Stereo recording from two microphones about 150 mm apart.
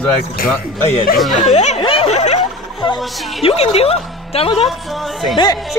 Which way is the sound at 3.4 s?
40° left (ahead or behind).